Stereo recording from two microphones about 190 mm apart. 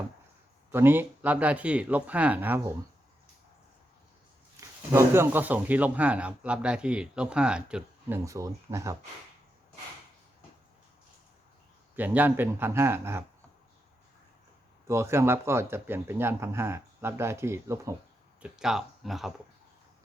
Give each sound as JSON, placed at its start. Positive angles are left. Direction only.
{"t": 0.7, "sound": "speech", "side_deg": -10}
{"t": 4.9, "sound": "speech", "side_deg": -15}
{"t": 8.2, "sound": "speech", "side_deg": -15}
{"t": 11.9, "sound": "speech", "side_deg": -10}
{"t": 14.8, "sound": "speech", "side_deg": -15}
{"t": 18.4, "sound": "speech", "side_deg": -5}